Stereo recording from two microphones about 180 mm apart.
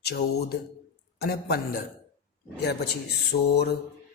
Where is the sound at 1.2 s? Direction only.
60° left (ahead or behind).